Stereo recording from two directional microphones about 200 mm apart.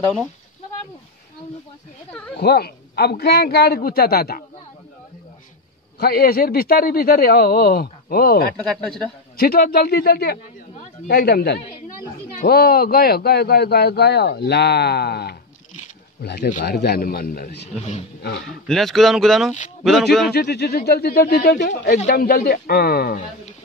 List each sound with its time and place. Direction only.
2.3 s a man's voice: 55° left (ahead or behind)
5.9 s a man's voice: 50° left (ahead or behind)
8.5 s speech: centre (ahead or behind)
9.4 s a man's voice: 50° left (ahead or behind)
18.7 s speech: centre (ahead or behind)
20.3 s a man's voice: 50° left (ahead or behind)
21.9 s a man's voice: 40° left (ahead or behind)